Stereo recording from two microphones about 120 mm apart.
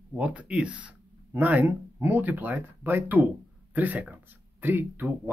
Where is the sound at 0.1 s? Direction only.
10° right (ahead or behind).